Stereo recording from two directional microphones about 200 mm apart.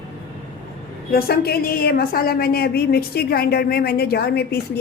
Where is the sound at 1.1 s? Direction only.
50° left (ahead or behind).